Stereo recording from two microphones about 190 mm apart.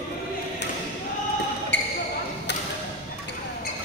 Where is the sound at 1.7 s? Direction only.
65° left (ahead or behind).